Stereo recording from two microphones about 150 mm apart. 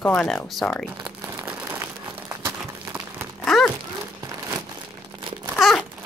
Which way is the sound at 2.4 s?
15° right (ahead or behind).